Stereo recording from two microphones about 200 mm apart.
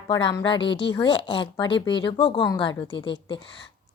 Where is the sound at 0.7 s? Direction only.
65° left (ahead or behind).